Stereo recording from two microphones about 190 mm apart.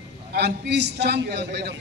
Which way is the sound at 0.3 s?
55° right (ahead or behind).